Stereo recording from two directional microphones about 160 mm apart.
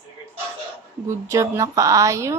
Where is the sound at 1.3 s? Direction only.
20° right (ahead or behind).